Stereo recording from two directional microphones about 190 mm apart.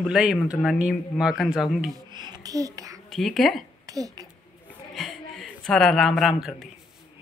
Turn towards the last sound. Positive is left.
turn(degrees=0)  # may be behind; listen again after turning